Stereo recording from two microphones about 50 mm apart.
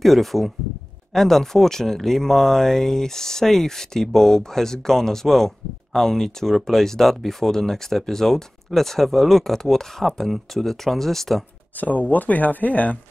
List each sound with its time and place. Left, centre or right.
0.0 s speech: centre
11.8 s speech: left